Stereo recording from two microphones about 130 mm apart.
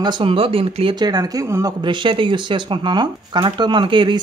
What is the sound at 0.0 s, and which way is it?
Speech, 45° right (ahead or behind).